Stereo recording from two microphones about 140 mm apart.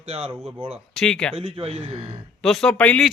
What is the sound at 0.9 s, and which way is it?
Speech, 5° left (ahead or behind).